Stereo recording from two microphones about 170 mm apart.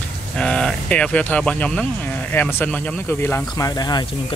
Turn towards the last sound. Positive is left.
turn(degrees=25)  # may be behind; listen again after turning